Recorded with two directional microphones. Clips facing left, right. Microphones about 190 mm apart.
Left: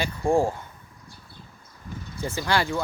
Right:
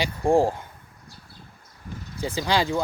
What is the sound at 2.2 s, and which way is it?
Speech, 15° right (ahead or behind).